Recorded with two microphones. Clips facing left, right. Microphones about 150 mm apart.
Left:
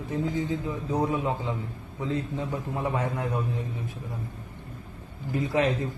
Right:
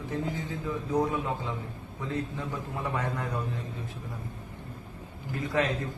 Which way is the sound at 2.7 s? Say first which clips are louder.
Left 3 dB; 20° left (ahead or behind).